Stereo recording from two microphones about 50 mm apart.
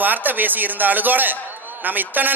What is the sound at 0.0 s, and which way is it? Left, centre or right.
A man's voice, right.